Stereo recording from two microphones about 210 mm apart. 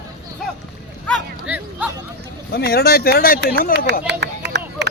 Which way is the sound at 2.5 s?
50° left (ahead or behind).